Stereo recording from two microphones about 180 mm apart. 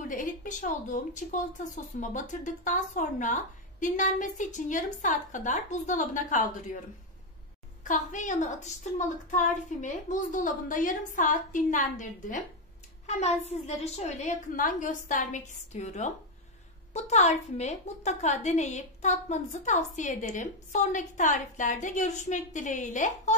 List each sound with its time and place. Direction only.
0.1 s a woman's voice: 45° left (ahead or behind)
7.8 s a woman's voice: 45° left (ahead or behind)
13.5 s a woman's voice: 35° left (ahead or behind)